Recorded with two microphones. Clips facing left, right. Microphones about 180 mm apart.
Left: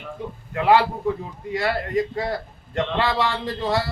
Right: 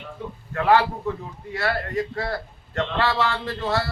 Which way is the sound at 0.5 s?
15° left (ahead or behind).